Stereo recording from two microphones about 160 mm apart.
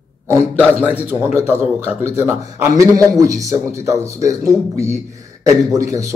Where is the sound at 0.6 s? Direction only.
10° right (ahead or behind).